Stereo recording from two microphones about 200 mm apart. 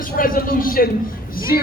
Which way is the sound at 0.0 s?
45° left (ahead or behind).